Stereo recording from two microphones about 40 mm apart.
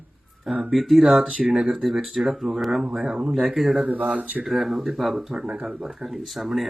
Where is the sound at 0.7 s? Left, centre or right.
Centre.